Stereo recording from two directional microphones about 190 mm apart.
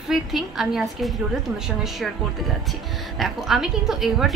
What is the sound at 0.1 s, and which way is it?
A woman's voice, centre (ahead or behind).